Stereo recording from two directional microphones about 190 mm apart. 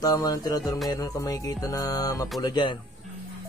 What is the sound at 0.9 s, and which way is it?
Music, 20° left (ahead or behind).